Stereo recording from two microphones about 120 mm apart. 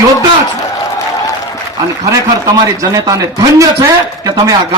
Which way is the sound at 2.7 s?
25° right (ahead or behind).